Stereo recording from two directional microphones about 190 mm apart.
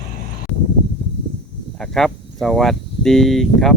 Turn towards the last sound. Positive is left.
turn(degrees=0)  # may be behind; listen again after turning